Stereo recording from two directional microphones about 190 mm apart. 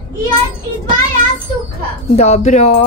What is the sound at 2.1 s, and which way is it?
Speech, 35° left (ahead or behind).